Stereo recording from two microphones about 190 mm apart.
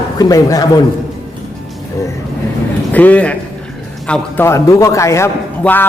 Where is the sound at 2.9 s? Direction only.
10° left (ahead or behind).